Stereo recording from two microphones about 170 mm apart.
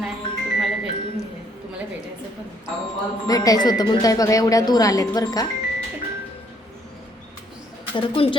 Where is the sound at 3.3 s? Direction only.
20° left (ahead or behind).